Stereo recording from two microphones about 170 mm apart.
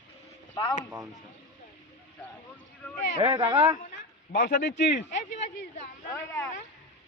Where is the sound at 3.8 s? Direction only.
55° left (ahead or behind).